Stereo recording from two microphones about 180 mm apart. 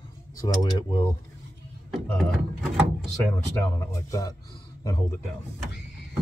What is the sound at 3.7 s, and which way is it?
Speech, 15° left (ahead or behind).